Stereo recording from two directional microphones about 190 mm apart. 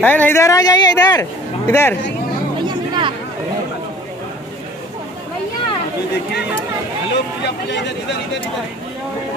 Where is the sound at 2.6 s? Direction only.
25° right (ahead or behind).